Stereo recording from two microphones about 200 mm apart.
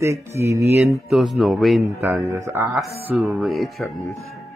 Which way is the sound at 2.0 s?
10° right (ahead or behind).